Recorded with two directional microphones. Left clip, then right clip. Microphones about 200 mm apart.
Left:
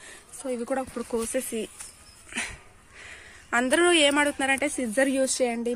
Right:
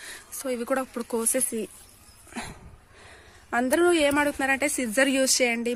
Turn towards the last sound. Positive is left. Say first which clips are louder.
# right 2 dB
turn(degrees=0)  # may be behind; listen again after turning